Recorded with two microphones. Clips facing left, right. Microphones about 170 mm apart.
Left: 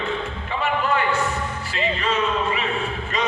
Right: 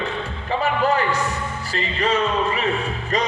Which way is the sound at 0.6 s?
40° right (ahead or behind).